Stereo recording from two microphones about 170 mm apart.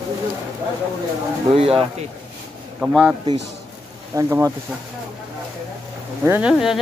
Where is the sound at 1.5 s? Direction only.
35° right (ahead or behind).